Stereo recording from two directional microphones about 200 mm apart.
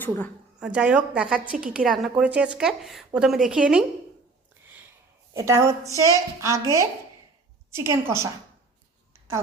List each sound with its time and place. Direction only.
0.6 s a woman's voice: 5° right (ahead or behind)
5.3 s speech: 15° right (ahead or behind)